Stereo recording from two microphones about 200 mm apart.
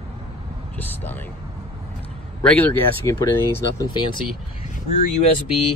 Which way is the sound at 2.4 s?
10° left (ahead or behind).